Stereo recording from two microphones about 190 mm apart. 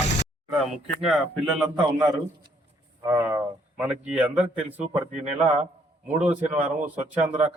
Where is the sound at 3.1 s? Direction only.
10° right (ahead or behind).